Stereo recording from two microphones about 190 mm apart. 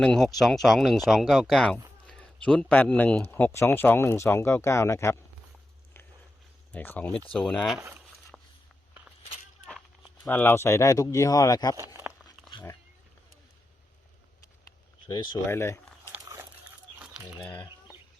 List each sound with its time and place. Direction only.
0.0 s speech: centre (ahead or behind)
6.7 s speech: 10° left (ahead or behind)
7.8 s speech: 10° right (ahead or behind)
8.3 s a sound: centre (ahead or behind)
9.6 s walk: 5° right (ahead or behind)
10.2 s speech: 10° left (ahead or behind)
11.9 s a sound: 10° right (ahead or behind)
12.5 s dog: 25° left (ahead or behind)
15.0 s speech: 25° left (ahead or behind)
16.1 s dog: 10° right (ahead or behind)
17.4 s speech: 10° left (ahead or behind)